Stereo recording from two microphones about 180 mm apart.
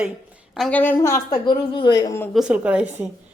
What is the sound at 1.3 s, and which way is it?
Speech, 25° left (ahead or behind).